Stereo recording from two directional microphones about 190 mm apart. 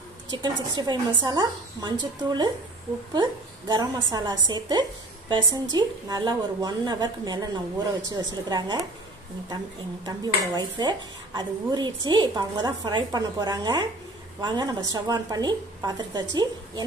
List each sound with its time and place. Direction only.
0.3 s speech: 20° right (ahead or behind)
10.0 s speech: 20° right (ahead or behind)